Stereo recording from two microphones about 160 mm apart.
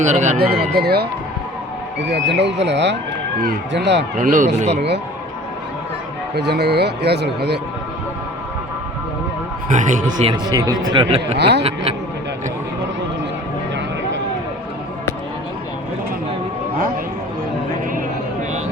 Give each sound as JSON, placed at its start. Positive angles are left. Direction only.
{"t": 0.0, "sound": "speech", "side_deg": -45}
{"t": 0.7, "sound": "speech", "side_deg": -80}
{"t": 2.0, "sound": "speech", "side_deg": -90}
{"t": 4.2, "sound": "speech", "side_deg": -55}
{"t": 6.3, "sound": "speech", "side_deg": -90}
{"t": 9.6, "sound": "speech", "side_deg": -50}
{"t": 10.2, "sound": "speech", "side_deg": -25}
{"t": 11.3, "sound": "speech", "side_deg": -90}